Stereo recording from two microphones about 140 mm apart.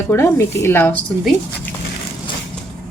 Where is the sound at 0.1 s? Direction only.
15° left (ahead or behind).